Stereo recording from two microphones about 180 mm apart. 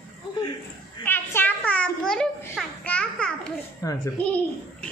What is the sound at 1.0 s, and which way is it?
A woman's voice, 10° left (ahead or behind).